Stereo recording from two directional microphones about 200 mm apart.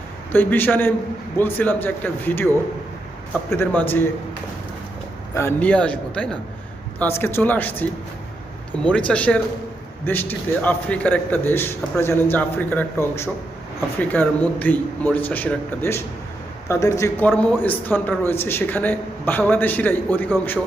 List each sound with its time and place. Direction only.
0.3 s a man's voice: 10° left (ahead or behind)
3.5 s a man's voice: 10° left (ahead or behind)
5.3 s a man's voice: 15° left (ahead or behind)